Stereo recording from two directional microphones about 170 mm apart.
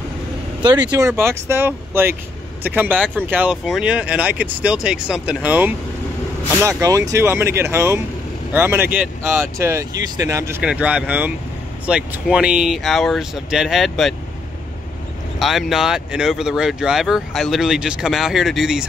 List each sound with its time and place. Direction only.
0.6 s speech: 25° right (ahead or behind)
0.9 s speech: 15° right (ahead or behind)
10.6 s speech: 5° right (ahead or behind)
15.3 s speech: centre (ahead or behind)